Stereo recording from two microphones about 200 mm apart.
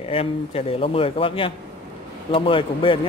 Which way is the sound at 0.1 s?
30° left (ahead or behind).